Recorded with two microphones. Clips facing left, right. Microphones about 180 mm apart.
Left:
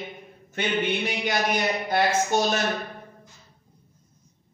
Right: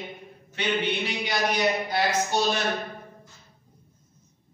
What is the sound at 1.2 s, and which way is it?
Speech, 50° left (ahead or behind).